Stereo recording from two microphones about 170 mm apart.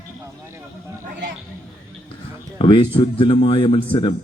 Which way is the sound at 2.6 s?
30° left (ahead or behind).